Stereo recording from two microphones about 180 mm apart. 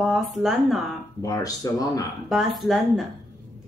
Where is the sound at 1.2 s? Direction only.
20° left (ahead or behind).